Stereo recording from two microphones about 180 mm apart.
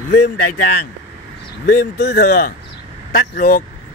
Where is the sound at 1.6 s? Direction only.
70° left (ahead or behind); by 3.7 s 50° left (ahead or behind).